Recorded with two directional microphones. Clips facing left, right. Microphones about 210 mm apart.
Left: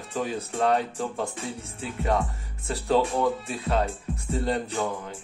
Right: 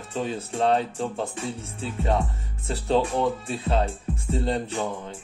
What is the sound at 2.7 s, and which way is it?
Music, 30° right (ahead or behind).